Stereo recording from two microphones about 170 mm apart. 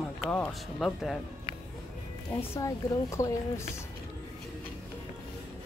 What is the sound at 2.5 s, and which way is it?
Speech, 15° left (ahead or behind).